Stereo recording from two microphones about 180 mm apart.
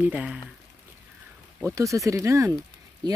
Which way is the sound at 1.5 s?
15° right (ahead or behind).